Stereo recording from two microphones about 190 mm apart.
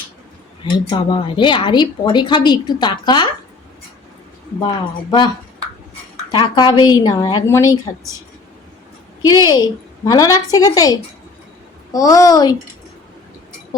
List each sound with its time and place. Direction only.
0.6 s speech: 25° left (ahead or behind)
6.3 s speech: 25° left (ahead or behind)
9.2 s speech: 20° left (ahead or behind)